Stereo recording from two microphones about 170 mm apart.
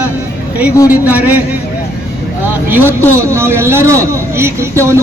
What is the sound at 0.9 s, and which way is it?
Speech, 10° right (ahead or behind).